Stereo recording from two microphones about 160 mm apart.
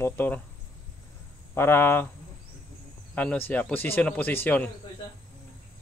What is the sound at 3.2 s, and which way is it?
Speech, 10° left (ahead or behind).